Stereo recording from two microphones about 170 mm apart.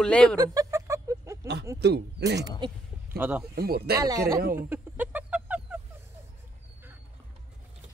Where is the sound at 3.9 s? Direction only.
20° right (ahead or behind).